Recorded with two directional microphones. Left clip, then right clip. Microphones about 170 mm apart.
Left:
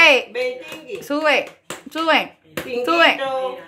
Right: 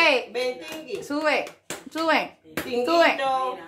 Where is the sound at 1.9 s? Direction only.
20° left (ahead or behind).